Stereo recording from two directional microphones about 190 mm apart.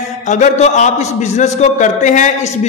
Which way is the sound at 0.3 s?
40° left (ahead or behind).